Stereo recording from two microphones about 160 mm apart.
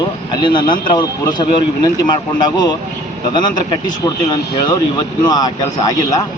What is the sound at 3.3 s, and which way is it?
Speech, 30° left (ahead or behind).